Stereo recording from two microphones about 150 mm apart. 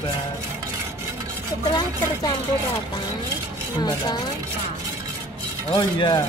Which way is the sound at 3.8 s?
30° left (ahead or behind).